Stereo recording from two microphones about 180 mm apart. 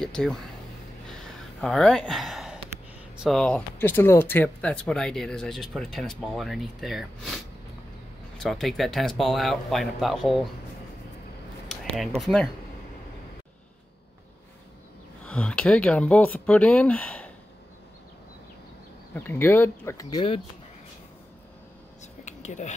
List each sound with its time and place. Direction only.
0.0 s a sound: 5° left (ahead or behind)
1.6 s speech: centre (ahead or behind)
8.4 s speech: centre (ahead or behind)
12.2 s speech: 5° left (ahead or behind)
15.2 s speech: 5° left (ahead or behind)
19.1 s speech: 10° left (ahead or behind); by 20.4 s 30° left (ahead or behind)
22.0 s a sound: 40° left (ahead or behind)